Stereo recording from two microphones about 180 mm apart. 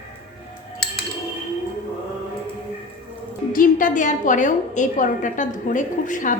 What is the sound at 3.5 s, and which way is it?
A woman's voice, 50° left (ahead or behind).